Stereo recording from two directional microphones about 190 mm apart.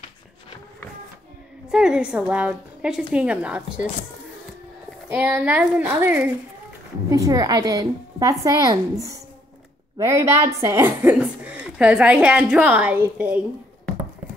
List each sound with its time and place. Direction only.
1.7 s a woman's voice: 5° right (ahead or behind)
5.1 s a woman's voice: 5° right (ahead or behind)